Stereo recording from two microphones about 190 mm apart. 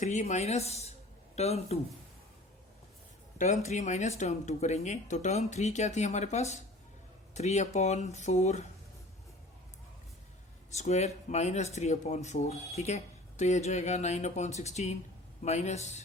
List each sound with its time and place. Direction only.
0.0 s speech: 40° left (ahead or behind)
3.3 s speech: 35° left (ahead or behind)
10.8 s speech: 35° left (ahead or behind)